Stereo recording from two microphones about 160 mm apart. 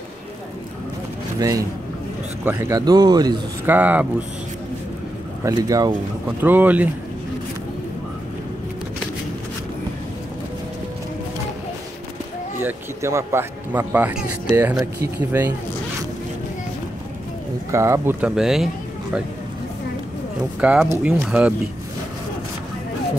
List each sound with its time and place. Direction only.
2.4 s speech: 15° right (ahead or behind)
3.6 s speech: 10° right (ahead or behind)
5.4 s speech: 20° right (ahead or behind)
6.4 s speech: 10° right (ahead or behind)
12.6 s speech: 15° right (ahead or behind)
17.6 s speech: 20° right (ahead or behind)
18.2 s speech: 5° right (ahead or behind)
20.6 s speech: 10° right (ahead or behind)